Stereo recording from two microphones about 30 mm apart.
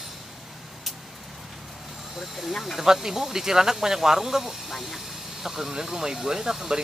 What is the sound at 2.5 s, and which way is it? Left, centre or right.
Speech, centre.